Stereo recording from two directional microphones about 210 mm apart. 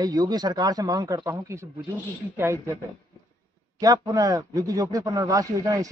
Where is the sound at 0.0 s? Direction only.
20° right (ahead or behind).